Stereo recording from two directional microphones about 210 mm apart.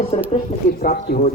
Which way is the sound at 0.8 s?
45° left (ahead or behind).